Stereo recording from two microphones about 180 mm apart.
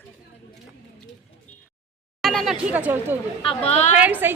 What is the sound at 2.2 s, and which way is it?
Speech, centre (ahead or behind).